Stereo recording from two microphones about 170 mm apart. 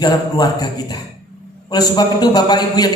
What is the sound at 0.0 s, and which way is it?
A man's voice, 20° left (ahead or behind).